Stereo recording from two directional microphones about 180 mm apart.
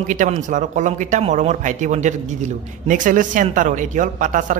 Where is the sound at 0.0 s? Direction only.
45° right (ahead or behind).